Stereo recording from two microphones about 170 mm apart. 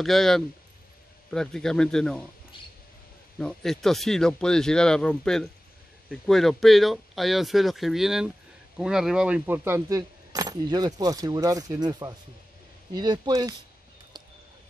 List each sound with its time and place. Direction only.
0.0 s speech: centre (ahead or behind)
3.3 s speech: 5° left (ahead or behind); by 13.6 s 20° right (ahead or behind)